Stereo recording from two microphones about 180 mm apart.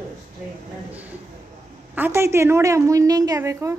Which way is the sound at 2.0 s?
15° right (ahead or behind).